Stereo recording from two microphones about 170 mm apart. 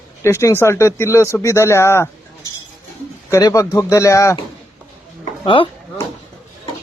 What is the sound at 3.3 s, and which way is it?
Speech, 20° left (ahead or behind).